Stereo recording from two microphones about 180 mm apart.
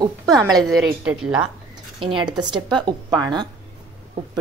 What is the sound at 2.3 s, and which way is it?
A woman's voice, 25° right (ahead or behind).